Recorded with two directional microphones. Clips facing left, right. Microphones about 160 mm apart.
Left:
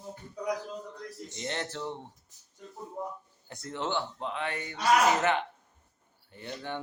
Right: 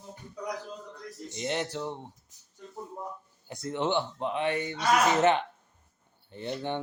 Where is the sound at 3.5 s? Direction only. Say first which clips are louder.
Right 4 dB; 15° right (ahead or behind).